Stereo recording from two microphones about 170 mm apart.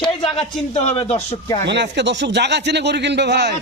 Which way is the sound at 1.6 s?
90° right.